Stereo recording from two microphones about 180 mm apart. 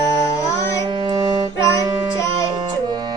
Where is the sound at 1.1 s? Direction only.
20° right (ahead or behind).